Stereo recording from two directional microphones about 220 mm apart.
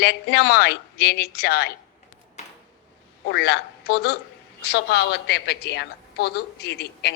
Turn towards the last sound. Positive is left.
turn(degrees=50)  # may be behind; listen again after turning